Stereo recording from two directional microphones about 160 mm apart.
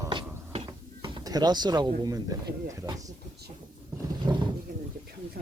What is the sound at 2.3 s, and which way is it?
Speech, 20° right (ahead or behind).